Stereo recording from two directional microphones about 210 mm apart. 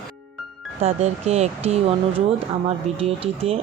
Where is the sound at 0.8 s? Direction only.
30° right (ahead or behind).